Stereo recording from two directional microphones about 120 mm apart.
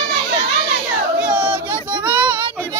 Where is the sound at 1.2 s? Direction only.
10° right (ahead or behind).